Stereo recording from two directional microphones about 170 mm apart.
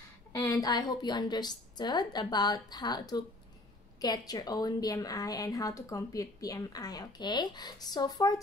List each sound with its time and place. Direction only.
0.3 s a woman's voice: 20° left (ahead or behind)